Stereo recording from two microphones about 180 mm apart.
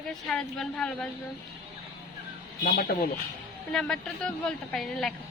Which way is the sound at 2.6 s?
55° left (ahead or behind).